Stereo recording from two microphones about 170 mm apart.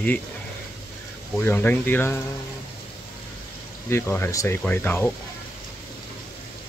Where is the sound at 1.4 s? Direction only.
10° left (ahead or behind).